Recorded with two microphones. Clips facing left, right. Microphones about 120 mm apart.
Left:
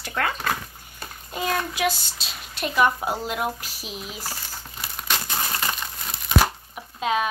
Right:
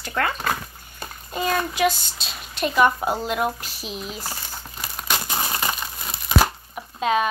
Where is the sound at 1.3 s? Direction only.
5° left (ahead or behind).